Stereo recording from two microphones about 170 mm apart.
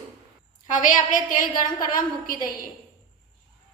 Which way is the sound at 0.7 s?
50° left (ahead or behind).